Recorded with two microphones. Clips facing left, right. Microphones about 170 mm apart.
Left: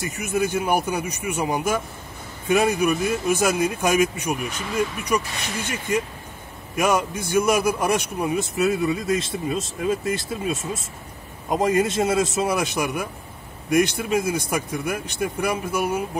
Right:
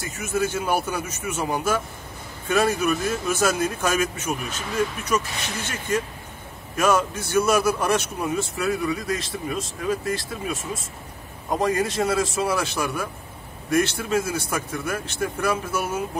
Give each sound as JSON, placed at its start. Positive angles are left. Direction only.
{"t": 0.0, "sound": "speech", "side_deg": 15}